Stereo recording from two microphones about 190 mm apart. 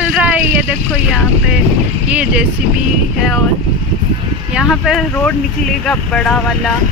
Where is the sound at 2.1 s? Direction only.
5° right (ahead or behind).